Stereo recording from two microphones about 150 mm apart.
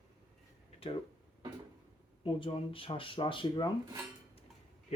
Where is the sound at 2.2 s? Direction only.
35° left (ahead or behind).